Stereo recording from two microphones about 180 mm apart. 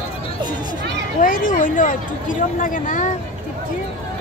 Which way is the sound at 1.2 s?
50° left (ahead or behind).